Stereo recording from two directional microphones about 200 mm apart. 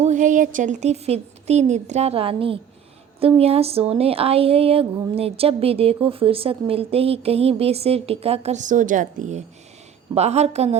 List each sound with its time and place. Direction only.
0.0 s a woman's voice: 40° right (ahead or behind)
3.2 s a sound: 30° right (ahead or behind)
10.2 s a woman's voice: 35° right (ahead or behind)